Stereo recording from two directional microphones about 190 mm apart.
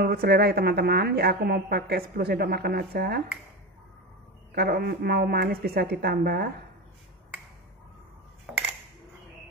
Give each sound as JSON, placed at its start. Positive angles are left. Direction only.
{"t": 0.0, "sound": "a woman's voice", "side_deg": -55}
{"t": 4.6, "sound": "a woman's voice", "side_deg": -55}